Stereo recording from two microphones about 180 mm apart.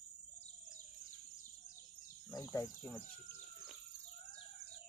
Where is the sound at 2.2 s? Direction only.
20° left (ahead or behind).